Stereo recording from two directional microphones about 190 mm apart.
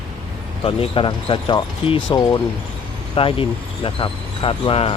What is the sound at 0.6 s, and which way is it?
Speech, 30° left (ahead or behind).